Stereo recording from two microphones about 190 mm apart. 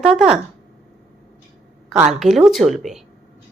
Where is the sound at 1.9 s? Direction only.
Centre (ahead or behind).